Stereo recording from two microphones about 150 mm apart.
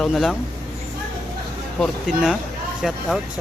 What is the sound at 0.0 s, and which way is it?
Speech, centre (ahead or behind).